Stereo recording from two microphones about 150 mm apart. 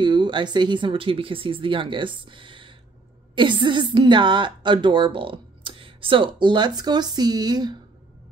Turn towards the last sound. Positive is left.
turn(degrees=-25)  # may be behind; listen again after turning